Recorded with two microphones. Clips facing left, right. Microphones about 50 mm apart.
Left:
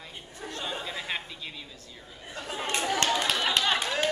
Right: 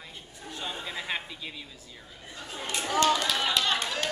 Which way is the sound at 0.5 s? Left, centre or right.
Centre.